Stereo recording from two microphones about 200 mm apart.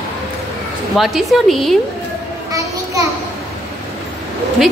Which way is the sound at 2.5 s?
15° right (ahead or behind).